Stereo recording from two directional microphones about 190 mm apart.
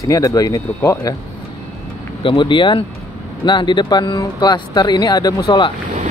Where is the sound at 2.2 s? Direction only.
25° left (ahead or behind).